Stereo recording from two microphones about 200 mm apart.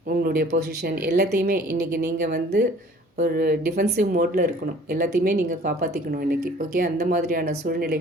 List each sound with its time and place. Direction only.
0.1 s speech: 45° right (ahead or behind)